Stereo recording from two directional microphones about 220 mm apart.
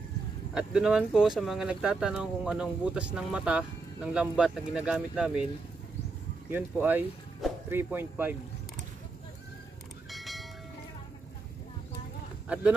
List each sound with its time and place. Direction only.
0.6 s speech: 5° right (ahead or behind)
6.5 s speech: 10° right (ahead or behind)
10.1 s a sound: centre (ahead or behind)